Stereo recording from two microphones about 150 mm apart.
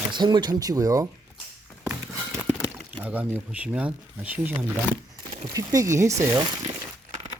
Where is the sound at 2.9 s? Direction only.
10° right (ahead or behind).